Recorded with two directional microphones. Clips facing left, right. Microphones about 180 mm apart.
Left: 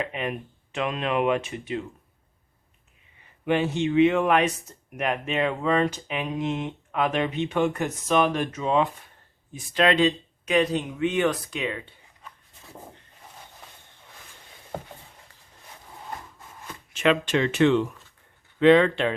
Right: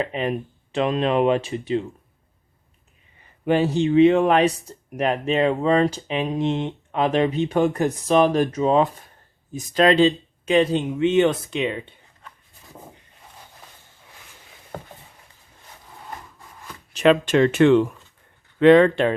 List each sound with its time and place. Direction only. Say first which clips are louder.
0.0 s speech: right 5 dB; 35° right (ahead or behind)
3.4 s speech: right 4 dB; 35° right (ahead or behind)
16.9 s speech: right 5 dB; 40° right (ahead or behind)